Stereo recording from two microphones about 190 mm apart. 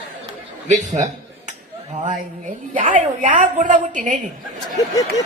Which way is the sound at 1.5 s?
40° right (ahead or behind).